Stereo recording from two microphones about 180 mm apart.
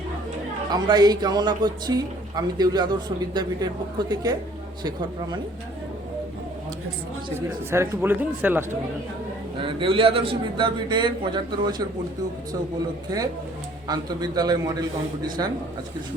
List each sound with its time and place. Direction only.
0.7 s speech: 20° right (ahead or behind)
7.3 s speech: 15° right (ahead or behind)
9.6 s speech: 30° right (ahead or behind)
13.8 s speech: 20° right (ahead or behind)